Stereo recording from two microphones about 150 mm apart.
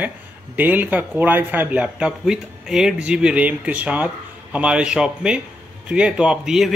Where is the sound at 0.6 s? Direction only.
10° right (ahead or behind).